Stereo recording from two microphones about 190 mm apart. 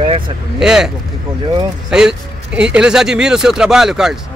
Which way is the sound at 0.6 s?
5° right (ahead or behind).